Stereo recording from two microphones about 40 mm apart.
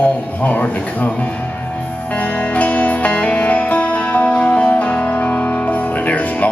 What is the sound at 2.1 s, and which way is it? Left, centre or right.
Music, left.